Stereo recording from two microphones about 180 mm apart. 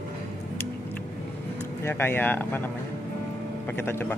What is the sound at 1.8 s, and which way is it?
Speech, 15° left (ahead or behind).